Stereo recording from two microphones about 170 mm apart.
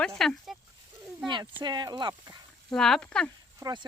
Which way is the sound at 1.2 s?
25° right (ahead or behind).